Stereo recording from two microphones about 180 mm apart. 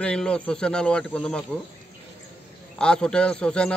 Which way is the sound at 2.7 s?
5° left (ahead or behind).